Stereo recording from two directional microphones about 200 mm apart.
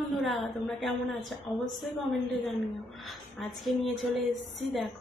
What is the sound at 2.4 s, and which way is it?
A woman's voice, centre (ahead or behind).